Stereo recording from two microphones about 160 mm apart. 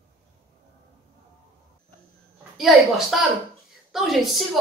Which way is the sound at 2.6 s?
Centre (ahead or behind).